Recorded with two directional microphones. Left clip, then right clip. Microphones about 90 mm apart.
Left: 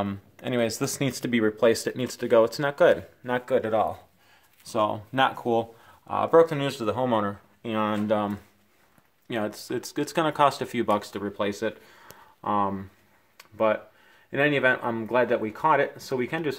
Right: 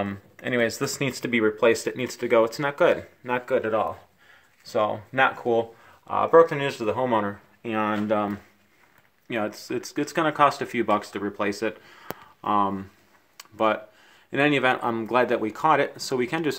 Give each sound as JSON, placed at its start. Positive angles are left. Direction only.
{"t": 0.0, "sound": "speech", "side_deg": 10}
{"t": 1.0, "sound": "speech", "side_deg": 15}
{"t": 9.3, "sound": "speech", "side_deg": 15}
{"t": 12.4, "sound": "speech", "side_deg": -20}
{"t": 14.3, "sound": "speech", "side_deg": -25}